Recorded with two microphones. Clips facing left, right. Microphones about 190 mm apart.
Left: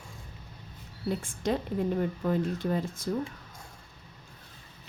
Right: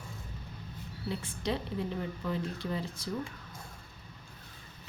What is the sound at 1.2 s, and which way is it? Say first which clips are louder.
Speech: left 3 dB; 50° left (ahead or behind).